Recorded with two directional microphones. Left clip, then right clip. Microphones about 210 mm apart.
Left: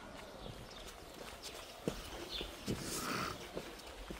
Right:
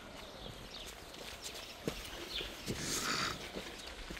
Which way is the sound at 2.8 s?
Centre (ahead or behind).